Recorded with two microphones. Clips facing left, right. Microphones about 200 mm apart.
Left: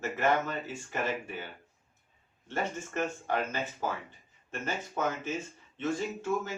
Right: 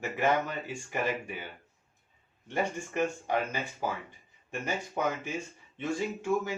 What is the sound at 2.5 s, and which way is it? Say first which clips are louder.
Speech: right 2 dB; 15° right (ahead or behind).